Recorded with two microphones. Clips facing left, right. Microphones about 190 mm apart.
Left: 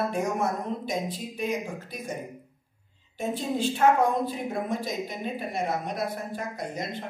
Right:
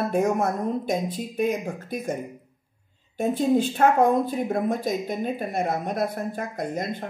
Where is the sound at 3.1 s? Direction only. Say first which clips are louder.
Right 8 dB; 50° right (ahead or behind).